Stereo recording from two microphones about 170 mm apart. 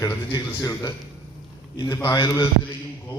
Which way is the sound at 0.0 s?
20° left (ahead or behind).